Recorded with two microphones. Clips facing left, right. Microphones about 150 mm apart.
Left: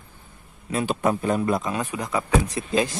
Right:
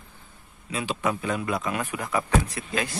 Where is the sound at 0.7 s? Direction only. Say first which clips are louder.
Left 5 dB; 50° left (ahead or behind).